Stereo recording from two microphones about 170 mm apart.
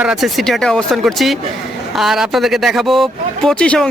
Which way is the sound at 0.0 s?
5° right (ahead or behind).